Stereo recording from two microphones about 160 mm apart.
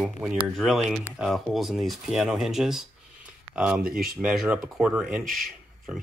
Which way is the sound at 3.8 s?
65° right (ahead or behind).